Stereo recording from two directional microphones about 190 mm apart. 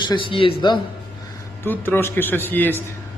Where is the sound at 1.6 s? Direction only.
10° left (ahead or behind).